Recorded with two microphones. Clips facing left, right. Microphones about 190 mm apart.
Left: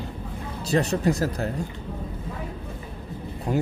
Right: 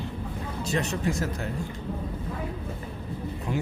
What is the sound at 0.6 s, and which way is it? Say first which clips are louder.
Speech: left 6 dB; 35° left (ahead or behind).